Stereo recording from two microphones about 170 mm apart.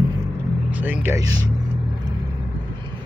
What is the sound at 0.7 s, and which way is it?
Speech, 10° right (ahead or behind).